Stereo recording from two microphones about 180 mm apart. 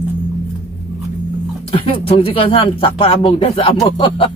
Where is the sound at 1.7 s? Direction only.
30° left (ahead or behind).